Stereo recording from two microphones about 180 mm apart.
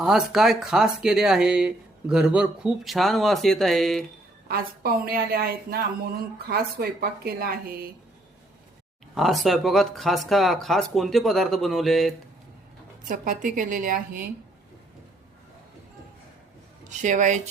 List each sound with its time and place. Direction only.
0.0 s speech: 5° right (ahead or behind)
4.4 s a woman's voice: 55° right (ahead or behind)
9.1 s speech: centre (ahead or behind)
13.1 s a woman's voice: 45° right (ahead or behind)
16.9 s speech: 40° right (ahead or behind)